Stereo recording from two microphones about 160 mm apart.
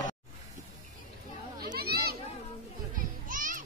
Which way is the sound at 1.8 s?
75° right (ahead or behind).